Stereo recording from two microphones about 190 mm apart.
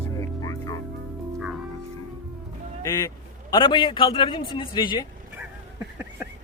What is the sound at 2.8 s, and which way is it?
A man's voice, 15° left (ahead or behind).